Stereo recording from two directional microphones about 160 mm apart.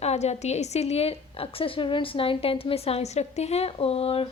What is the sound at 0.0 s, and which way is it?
A woman's voice, 45° left (ahead or behind).